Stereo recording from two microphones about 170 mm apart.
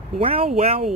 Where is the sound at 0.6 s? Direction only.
40° right (ahead or behind).